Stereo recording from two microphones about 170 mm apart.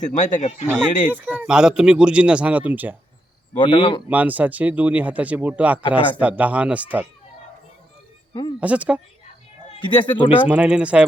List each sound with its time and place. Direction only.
0.0 s speech: 45° left (ahead or behind)
1.1 s speech: 10° right (ahead or behind)
3.6 s speech: 30° left (ahead or behind)
4.1 s speech: 10° right (ahead or behind)
8.3 s a sound: 25° left (ahead or behind)
8.6 s speech: 10° right (ahead or behind)
9.8 s speech: 30° left (ahead or behind)
10.4 s speech: 5° right (ahead or behind)